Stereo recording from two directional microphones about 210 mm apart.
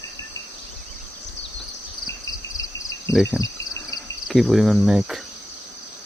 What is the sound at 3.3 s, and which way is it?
Insect, 15° left (ahead or behind).